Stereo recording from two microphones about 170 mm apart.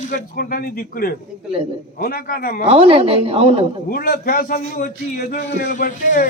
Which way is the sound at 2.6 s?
35° right (ahead or behind).